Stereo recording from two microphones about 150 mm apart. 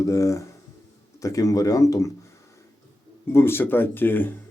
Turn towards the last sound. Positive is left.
turn(degrees=15)  # may be behind; listen again after turning